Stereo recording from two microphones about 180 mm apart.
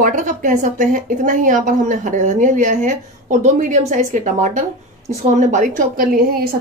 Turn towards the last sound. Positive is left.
turn(degrees=-55)  # may be behind; listen again after turning